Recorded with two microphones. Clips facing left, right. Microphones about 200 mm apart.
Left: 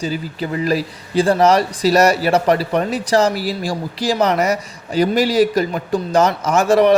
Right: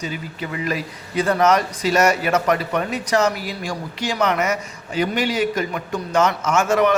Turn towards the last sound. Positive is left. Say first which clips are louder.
# left 4 dB
turn(degrees=35)  # may be behind; listen again after turning